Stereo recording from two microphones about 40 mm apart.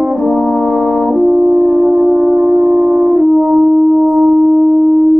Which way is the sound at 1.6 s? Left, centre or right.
Centre.